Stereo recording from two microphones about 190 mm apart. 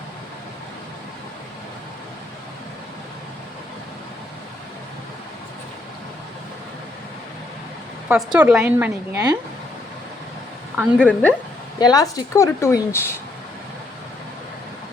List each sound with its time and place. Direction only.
8.0 s a woman's voice: 5° right (ahead or behind)
9.1 s speech: 20° right (ahead or behind)
10.9 s speech: 5° left (ahead or behind)
11.8 s speech: 20° left (ahead or behind)